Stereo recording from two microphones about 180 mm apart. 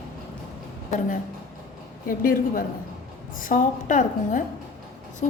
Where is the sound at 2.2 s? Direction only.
50° left (ahead or behind).